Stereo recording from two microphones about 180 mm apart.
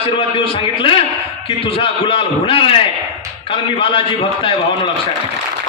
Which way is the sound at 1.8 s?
30° left (ahead or behind).